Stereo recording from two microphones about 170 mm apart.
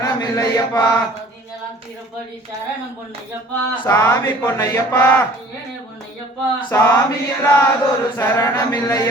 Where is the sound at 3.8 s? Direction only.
15° left (ahead or behind).